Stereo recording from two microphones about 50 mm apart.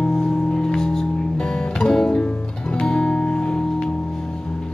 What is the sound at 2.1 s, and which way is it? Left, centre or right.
Music, centre.